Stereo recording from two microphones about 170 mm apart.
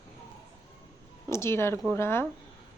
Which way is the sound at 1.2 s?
15° left (ahead or behind).